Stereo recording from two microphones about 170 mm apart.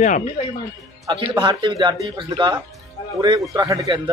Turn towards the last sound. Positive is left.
turn(degrees=-20)  # may be behind; listen again after turning